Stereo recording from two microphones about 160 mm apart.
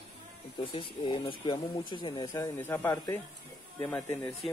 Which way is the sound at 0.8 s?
30° left (ahead or behind).